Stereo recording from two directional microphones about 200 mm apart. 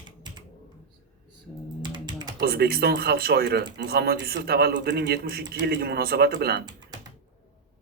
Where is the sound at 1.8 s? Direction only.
20° right (ahead or behind).